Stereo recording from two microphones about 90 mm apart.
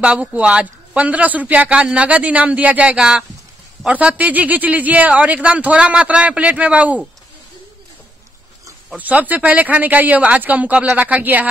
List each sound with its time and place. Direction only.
0.0 s a man's voice: 15° right (ahead or behind)
8.9 s a man's voice: 20° right (ahead or behind)